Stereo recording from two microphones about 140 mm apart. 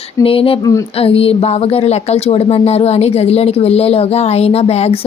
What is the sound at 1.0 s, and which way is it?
A woman's voice, 45° left (ahead or behind).